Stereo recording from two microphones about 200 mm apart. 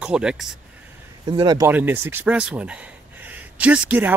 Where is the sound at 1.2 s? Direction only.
20° right (ahead or behind).